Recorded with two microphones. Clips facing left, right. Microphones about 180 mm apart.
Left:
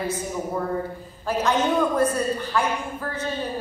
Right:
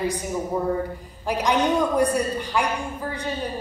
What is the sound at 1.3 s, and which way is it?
A woman's voice, 15° right (ahead or behind).